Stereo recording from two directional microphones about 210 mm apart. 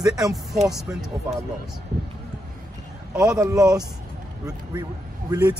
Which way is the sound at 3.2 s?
15° right (ahead or behind).